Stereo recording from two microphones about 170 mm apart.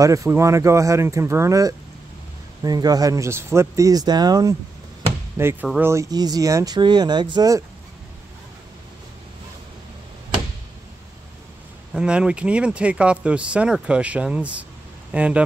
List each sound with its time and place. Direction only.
0.0 s speech: 20° right (ahead or behind)
11.9 s speech: 5° right (ahead or behind)